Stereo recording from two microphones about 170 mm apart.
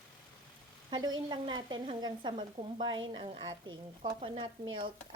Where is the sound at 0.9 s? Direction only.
25° right (ahead or behind).